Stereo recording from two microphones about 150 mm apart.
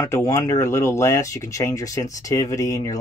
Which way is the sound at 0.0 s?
20° left (ahead or behind).